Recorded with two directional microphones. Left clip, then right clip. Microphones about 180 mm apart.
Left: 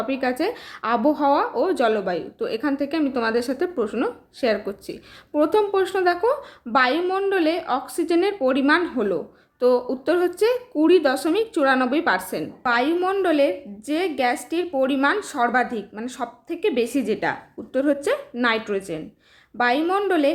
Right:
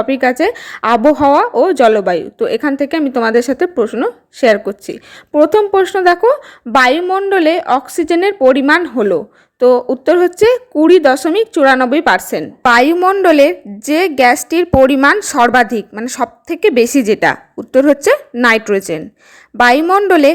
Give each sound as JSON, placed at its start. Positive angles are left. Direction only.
{"t": 0.0, "sound": "a woman's voice", "side_deg": -40}